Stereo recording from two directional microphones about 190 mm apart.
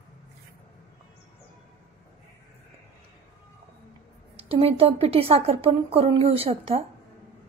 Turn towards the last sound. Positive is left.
turn(degrees=-30)  # may be behind; listen again after turning